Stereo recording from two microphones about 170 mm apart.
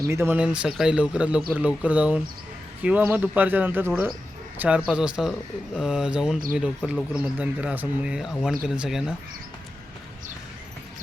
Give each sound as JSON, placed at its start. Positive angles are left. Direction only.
{"t": 0.1, "sound": "a man's voice", "side_deg": -15}